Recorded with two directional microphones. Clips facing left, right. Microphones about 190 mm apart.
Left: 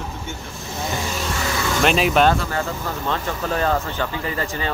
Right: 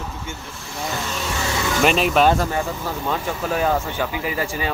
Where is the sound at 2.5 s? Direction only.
10° right (ahead or behind).